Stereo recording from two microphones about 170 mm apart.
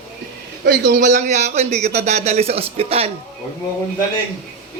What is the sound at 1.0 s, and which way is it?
Speech, 45° right (ahead or behind).